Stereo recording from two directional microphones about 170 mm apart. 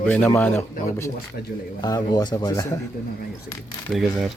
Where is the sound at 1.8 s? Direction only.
25° left (ahead or behind).